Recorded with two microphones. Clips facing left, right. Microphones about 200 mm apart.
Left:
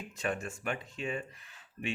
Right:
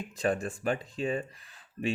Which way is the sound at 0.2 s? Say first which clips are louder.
Right 6 dB; 35° right (ahead or behind).